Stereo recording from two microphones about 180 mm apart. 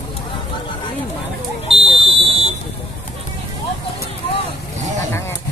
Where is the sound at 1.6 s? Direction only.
30° right (ahead or behind).